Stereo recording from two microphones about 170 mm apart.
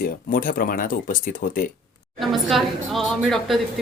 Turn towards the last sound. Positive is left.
turn(degrees=0)  # may be behind; listen again after turning